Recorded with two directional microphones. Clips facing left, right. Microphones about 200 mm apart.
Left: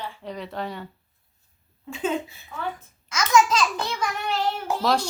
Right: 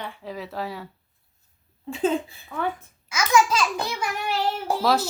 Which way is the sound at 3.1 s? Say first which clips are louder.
Left 1 dB; 5° right (ahead or behind).